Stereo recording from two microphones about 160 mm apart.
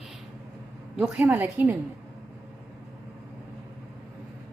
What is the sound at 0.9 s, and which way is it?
Speech, 5° right (ahead or behind).